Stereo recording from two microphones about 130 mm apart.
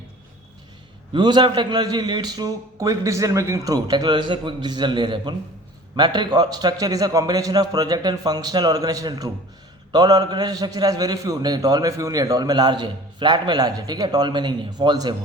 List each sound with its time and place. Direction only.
1.1 s a man's voice: 35° right (ahead or behind)